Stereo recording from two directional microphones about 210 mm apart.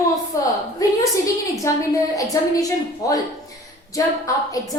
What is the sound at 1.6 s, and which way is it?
A woman's voice, 15° left (ahead or behind).